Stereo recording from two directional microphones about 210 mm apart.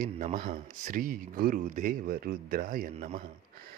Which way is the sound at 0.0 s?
40° right (ahead or behind).